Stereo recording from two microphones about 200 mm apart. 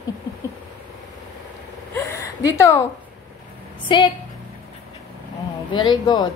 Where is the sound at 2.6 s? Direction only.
15° left (ahead or behind).